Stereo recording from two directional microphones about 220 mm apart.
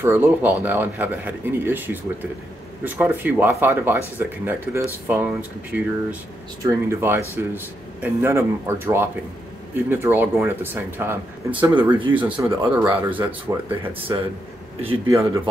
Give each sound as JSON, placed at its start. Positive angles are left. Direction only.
{"t": 0.0, "sound": "a man's voice", "side_deg": -10}